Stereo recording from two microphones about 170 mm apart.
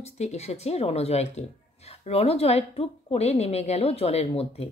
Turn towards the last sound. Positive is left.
turn(degrees=35)  # may be behind; listen again after turning